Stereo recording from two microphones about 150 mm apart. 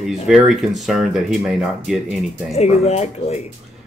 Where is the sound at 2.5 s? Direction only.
45° left (ahead or behind).